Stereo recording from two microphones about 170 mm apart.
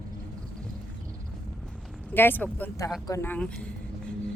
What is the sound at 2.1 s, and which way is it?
Speech, 10° left (ahead or behind).